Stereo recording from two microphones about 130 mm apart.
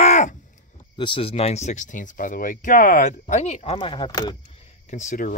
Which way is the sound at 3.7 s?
35° left (ahead or behind).